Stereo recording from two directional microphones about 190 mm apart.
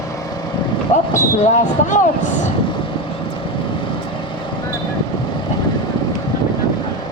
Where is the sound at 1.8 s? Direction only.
40° left (ahead or behind).